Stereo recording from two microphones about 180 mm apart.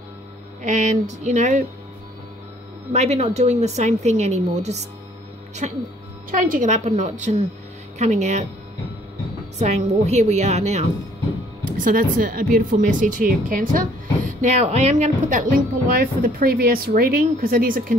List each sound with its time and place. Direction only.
0.6 s a woman's voice: 40° right (ahead or behind)
2.9 s speech: 40° right (ahead or behind)
9.6 s speech: 40° right (ahead or behind)
11.8 s a woman's voice: 50° right (ahead or behind)